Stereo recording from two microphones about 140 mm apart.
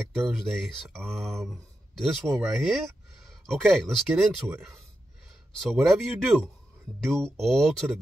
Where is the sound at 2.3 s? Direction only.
20° right (ahead or behind).